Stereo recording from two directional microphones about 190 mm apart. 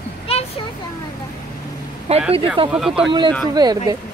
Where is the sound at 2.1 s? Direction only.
35° right (ahead or behind).